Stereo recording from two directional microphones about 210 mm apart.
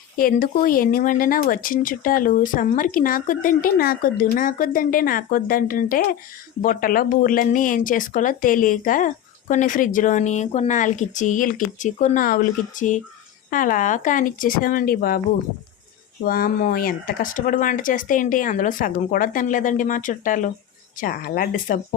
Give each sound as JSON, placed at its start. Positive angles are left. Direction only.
{"t": 0.2, "sound": "speech", "side_deg": 40}
{"t": 16.2, "sound": "speech", "side_deg": 45}